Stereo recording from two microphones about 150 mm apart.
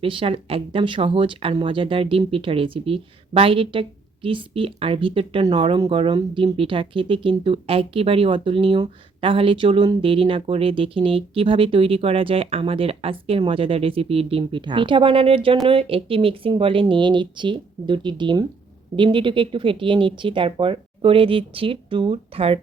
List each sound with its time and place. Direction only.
0.0 s speech: 35° right (ahead or behind)